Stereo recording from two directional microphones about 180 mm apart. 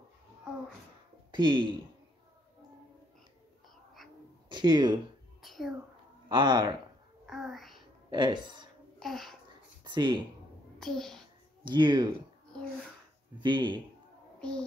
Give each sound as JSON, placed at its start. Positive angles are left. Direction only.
{"t": 1.3, "sound": "speech", "side_deg": -25}
{"t": 4.5, "sound": "speech", "side_deg": -25}
{"t": 5.4, "sound": "a sound", "side_deg": 0}
{"t": 6.2, "sound": "speech", "side_deg": -25}
{"t": 7.2, "sound": "a child's voice", "side_deg": 0}
{"t": 8.1, "sound": "speech", "side_deg": -25}
{"t": 9.0, "sound": "a child's voice", "side_deg": 0}
{"t": 9.8, "sound": "speech", "side_deg": -25}
{"t": 10.8, "sound": "a child's voice", "side_deg": 0}
{"t": 11.6, "sound": "speech", "side_deg": -25}
{"t": 13.4, "sound": "speech", "side_deg": -25}